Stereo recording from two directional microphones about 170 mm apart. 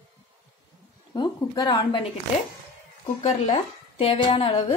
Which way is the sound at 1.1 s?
25° left (ahead or behind).